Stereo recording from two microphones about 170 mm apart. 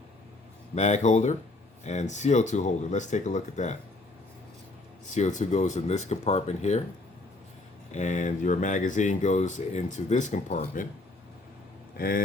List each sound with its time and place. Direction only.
0.8 s speech: 45° left (ahead or behind)
5.0 s speech: 45° left (ahead or behind)
7.9 s speech: 45° left (ahead or behind)
11.9 s speech: 60° left (ahead or behind)